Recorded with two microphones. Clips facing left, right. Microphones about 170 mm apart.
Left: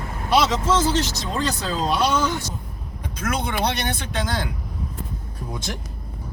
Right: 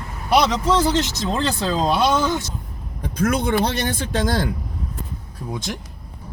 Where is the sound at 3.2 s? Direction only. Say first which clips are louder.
Right 6 dB; 50° right (ahead or behind).